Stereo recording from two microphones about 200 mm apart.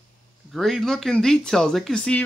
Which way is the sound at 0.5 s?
Centre (ahead or behind).